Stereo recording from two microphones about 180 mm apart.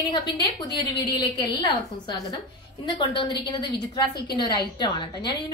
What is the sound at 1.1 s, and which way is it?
A woman's voice, 25° left (ahead or behind).